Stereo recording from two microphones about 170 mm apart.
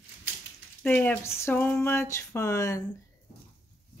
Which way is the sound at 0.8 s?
10° left (ahead or behind).